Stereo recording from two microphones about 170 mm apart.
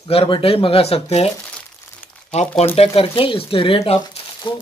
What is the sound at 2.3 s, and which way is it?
Speech, 40° left (ahead or behind).